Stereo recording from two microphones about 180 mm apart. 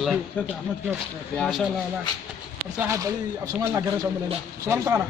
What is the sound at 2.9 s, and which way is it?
Speech, 20° right (ahead or behind).